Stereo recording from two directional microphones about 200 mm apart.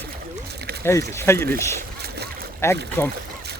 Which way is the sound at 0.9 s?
15° left (ahead or behind).